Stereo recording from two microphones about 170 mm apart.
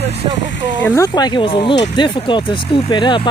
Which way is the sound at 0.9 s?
25° left (ahead or behind).